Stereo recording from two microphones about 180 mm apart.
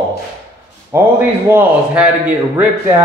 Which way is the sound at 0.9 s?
15° right (ahead or behind).